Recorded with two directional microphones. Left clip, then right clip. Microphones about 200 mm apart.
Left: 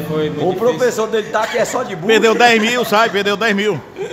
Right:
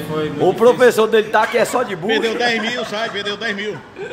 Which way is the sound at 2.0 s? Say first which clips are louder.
Left 10 dB; 40° left (ahead or behind).